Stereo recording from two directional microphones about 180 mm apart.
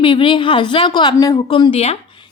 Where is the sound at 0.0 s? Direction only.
25° left (ahead or behind).